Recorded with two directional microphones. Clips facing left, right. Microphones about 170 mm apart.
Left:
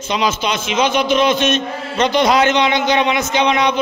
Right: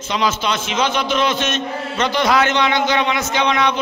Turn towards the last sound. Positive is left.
turn(degrees=15)  # may be behind; listen again after turning